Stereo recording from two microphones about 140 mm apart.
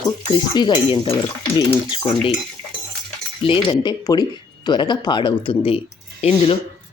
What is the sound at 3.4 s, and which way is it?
Speech, 35° left (ahead or behind).